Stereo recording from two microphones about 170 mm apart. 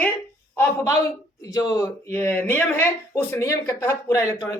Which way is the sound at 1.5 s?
20° left (ahead or behind).